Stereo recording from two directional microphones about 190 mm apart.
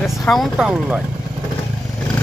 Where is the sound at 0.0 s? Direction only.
Centre (ahead or behind).